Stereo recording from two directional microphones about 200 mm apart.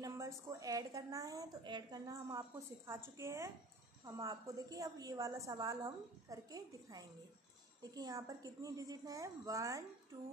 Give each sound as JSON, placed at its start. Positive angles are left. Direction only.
{"t": 0.0, "sound": "a woman's voice", "side_deg": -15}